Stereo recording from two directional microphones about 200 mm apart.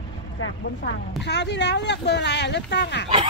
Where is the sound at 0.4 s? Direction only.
60° left (ahead or behind).